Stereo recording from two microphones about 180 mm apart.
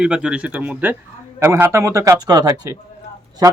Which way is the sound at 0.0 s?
5° right (ahead or behind).